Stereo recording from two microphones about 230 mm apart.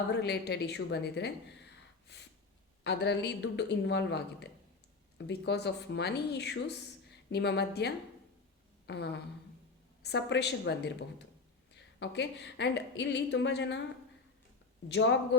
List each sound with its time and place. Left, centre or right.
0.1 s a woman's voice: left
2.1 s snort: left
2.8 s a woman's voice: left
14.8 s a woman's voice: left